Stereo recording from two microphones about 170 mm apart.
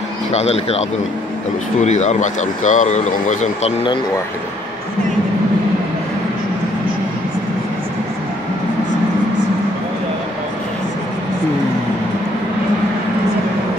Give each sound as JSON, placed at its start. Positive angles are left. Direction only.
{"t": 0.3, "sound": "speech", "side_deg": 40}